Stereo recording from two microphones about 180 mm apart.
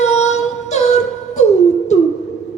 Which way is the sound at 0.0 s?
40° left (ahead or behind).